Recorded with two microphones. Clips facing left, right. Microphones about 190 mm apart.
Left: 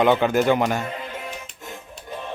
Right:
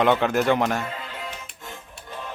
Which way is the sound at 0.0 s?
Centre (ahead or behind).